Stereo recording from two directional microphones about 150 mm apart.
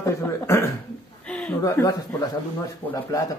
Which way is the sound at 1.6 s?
25° left (ahead or behind).